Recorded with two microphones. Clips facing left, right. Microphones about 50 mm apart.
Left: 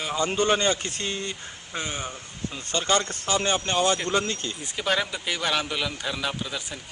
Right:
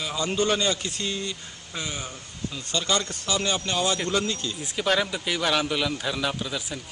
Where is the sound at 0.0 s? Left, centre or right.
Left.